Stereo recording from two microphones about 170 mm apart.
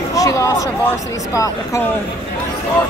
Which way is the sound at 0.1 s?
20° left (ahead or behind).